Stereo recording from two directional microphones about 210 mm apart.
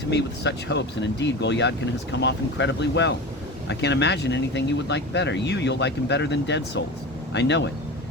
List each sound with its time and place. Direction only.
0.1 s speech: 55° left (ahead or behind)